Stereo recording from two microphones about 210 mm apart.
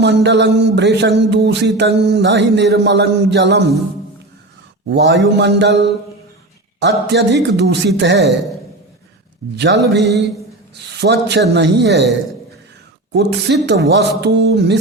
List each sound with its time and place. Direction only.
0.0 s music: 55° right (ahead or behind)
4.9 s speech: 55° right (ahead or behind)
6.7 s music: 55° right (ahead or behind)
9.6 s music: 55° right (ahead or behind)
10.8 s speech: 55° right (ahead or behind)
13.1 s speech: 55° right (ahead or behind)